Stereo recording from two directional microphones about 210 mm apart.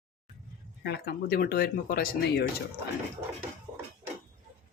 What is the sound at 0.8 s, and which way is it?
Speech, 45° left (ahead or behind).